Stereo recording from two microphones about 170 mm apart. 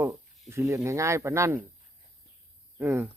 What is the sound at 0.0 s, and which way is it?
Speech, 15° right (ahead or behind).